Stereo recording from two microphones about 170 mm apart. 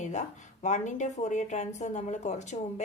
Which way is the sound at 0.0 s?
45° left (ahead or behind).